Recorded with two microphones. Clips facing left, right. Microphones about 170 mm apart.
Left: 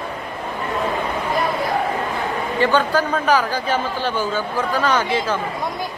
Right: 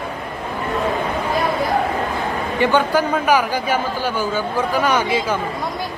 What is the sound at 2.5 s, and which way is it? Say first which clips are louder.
A man's voice: right 1 dB; 15° right (ahead or behind).